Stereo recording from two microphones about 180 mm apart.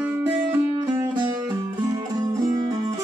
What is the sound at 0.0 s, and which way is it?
Music, 10° right (ahead or behind).